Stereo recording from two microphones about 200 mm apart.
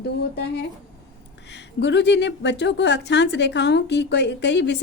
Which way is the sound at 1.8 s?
60° left (ahead or behind).